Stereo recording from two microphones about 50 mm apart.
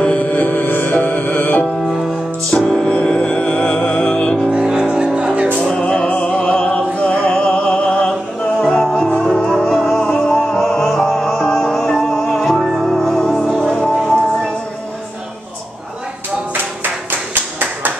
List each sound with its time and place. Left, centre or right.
0.0 s music: left
2.5 s music: centre
4.5 s music: centre
5.6 s music: centre
16.8 s a sound: right